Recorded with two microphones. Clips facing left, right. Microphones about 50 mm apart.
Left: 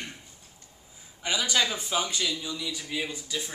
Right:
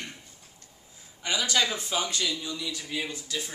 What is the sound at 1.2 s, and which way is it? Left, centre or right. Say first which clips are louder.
Speech: even; centre.